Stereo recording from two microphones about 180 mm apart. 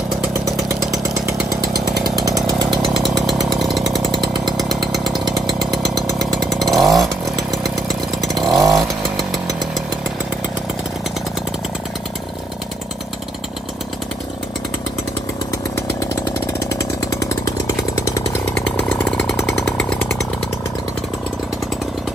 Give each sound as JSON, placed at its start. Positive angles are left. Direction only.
{"t": 1.2, "sound": "chainsaw", "side_deg": -20}
{"t": 2.8, "sound": "chainsaw", "side_deg": 0}
{"t": 5.5, "sound": "chainsaw", "side_deg": -20}
{"t": 5.9, "sound": "chainsaw", "side_deg": 0}
{"t": 8.4, "sound": "chainsaw", "side_deg": 0}
{"t": 17.2, "sound": "chainsaw", "side_deg": 20}
{"t": 18.9, "sound": "chainsaw", "side_deg": 5}